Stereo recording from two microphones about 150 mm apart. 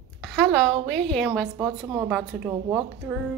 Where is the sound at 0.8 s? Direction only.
Centre (ahead or behind).